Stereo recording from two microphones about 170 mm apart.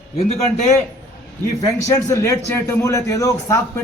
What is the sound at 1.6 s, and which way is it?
A man's voice, 20° left (ahead or behind).